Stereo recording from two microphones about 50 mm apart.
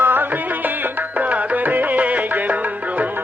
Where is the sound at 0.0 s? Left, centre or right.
Right.